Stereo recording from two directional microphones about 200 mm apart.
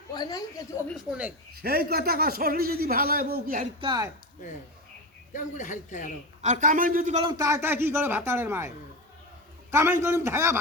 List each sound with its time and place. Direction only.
0.1 s a woman's voice: 20° left (ahead or behind)
0.9 s a woman's voice: 5° right (ahead or behind)
1.6 s a man's voice: 50° right (ahead or behind)
3.6 s speech: 25° right (ahead or behind)
5.3 s speech: 40° left (ahead or behind)
6.4 s a man's voice: 40° right (ahead or behind)
7.3 s speech: 15° right (ahead or behind)
9.7 s speech: 15° right (ahead or behind)